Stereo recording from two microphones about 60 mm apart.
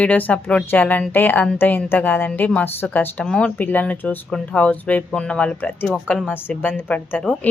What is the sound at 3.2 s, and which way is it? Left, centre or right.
Speech, centre.